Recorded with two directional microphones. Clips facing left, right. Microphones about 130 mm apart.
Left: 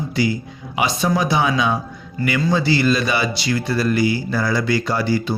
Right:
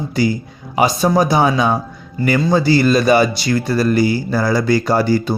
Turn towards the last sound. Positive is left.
turn(degrees=-45)  # may be behind; listen again after turning